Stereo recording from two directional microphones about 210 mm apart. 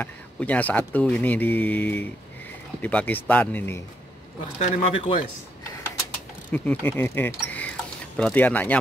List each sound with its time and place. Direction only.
0.0 s speech: 5° left (ahead or behind)
4.6 s speech: 35° left (ahead or behind)
6.5 s speech: 10° left (ahead or behind)